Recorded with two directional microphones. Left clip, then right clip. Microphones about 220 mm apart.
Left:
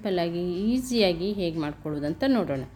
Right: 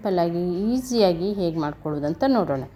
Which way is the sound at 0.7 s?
10° left (ahead or behind).